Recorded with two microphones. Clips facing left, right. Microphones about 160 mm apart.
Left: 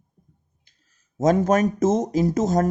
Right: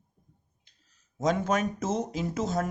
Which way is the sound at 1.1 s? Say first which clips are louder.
Left 8 dB; 45° left (ahead or behind).